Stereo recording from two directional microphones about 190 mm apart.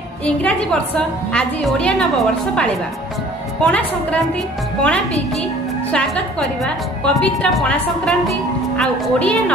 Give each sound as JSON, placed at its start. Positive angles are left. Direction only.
{"t": 0.2, "sound": "a woman's voice", "side_deg": 5}